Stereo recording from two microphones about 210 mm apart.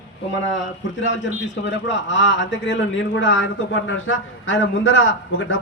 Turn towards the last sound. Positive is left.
turn(degrees=65)  # may be behind; listen again after turning